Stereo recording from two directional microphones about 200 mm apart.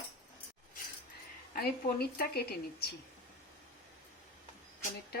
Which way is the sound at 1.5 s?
50° left (ahead or behind).